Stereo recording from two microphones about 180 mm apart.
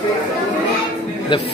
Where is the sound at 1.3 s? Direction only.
25° left (ahead or behind).